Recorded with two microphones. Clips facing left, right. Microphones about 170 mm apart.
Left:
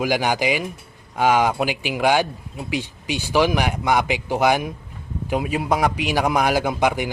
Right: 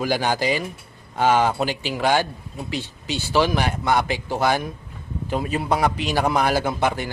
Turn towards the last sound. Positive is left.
turn(degrees=15)  # may be behind; listen again after turning